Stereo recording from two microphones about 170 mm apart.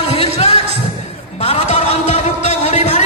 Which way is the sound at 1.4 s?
35° left (ahead or behind).